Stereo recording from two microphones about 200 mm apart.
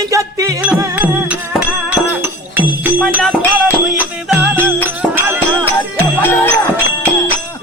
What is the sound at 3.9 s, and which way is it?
Music, 5° right (ahead or behind).